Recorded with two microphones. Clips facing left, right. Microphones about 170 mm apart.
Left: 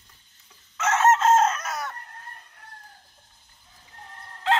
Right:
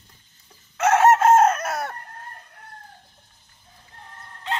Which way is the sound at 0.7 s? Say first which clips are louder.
Right 4 dB; 60° right (ahead or behind).